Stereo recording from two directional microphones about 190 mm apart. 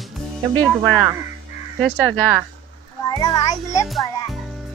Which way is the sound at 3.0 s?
20° left (ahead or behind).